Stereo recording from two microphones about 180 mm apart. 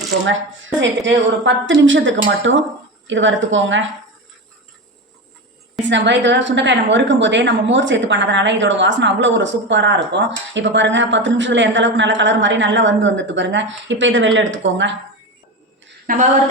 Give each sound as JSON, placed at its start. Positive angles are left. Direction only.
{"t": 0.3, "sound": "a woman's voice", "side_deg": -90}
{"t": 5.9, "sound": "a woman's voice", "side_deg": -80}
{"t": 16.1, "sound": "a woman's voice", "side_deg": -50}